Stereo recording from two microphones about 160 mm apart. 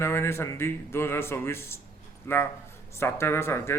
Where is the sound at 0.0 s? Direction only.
15° left (ahead or behind).